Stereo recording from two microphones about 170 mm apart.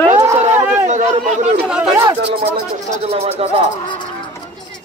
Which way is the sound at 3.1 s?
35° right (ahead or behind).